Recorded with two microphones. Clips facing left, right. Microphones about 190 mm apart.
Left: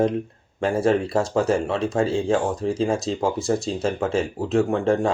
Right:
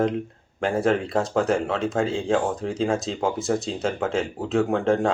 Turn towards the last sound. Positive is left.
turn(degrees=0)  # may be behind; listen again after turning